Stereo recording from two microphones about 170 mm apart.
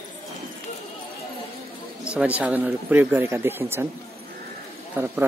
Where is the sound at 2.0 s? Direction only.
5° right (ahead or behind).